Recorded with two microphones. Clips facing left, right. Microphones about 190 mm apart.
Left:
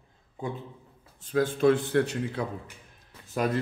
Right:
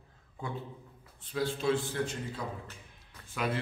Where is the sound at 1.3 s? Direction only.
50° left (ahead or behind); by 2.5 s 65° left (ahead or behind).